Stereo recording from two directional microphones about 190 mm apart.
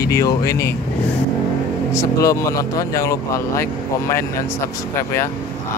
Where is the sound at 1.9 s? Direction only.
15° left (ahead or behind).